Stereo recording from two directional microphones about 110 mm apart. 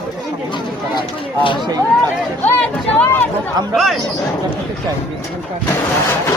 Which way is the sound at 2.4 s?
15° left (ahead or behind).